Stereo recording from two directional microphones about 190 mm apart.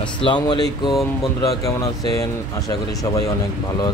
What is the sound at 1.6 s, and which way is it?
Speech, 15° left (ahead or behind).